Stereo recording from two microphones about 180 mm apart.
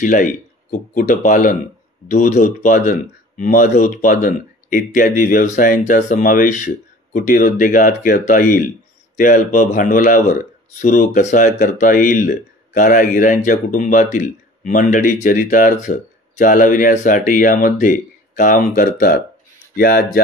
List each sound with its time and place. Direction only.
0.0 s speech: 45° left (ahead or behind)